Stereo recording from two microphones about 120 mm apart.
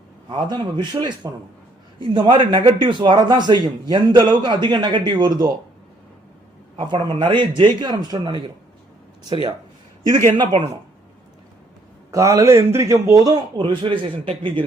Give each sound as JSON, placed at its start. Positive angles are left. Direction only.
{"t": 0.3, "sound": "a man's voice", "side_deg": -40}
{"t": 6.7, "sound": "a man's voice", "side_deg": -40}
{"t": 12.1, "sound": "a man's voice", "side_deg": -25}